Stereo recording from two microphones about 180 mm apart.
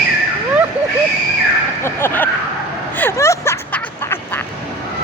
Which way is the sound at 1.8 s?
15° left (ahead or behind).